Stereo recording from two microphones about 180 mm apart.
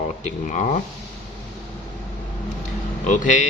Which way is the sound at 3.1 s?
45° left (ahead or behind).